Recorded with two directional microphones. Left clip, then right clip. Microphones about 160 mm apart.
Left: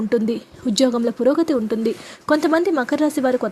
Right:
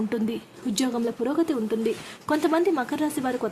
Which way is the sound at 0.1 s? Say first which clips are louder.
Left 9 dB; 30° left (ahead or behind).